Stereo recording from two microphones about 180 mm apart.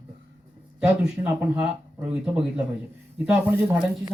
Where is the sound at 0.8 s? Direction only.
10° right (ahead or behind).